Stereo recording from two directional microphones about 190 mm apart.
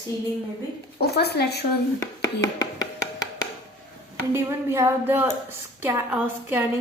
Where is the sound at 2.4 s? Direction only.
20° left (ahead or behind).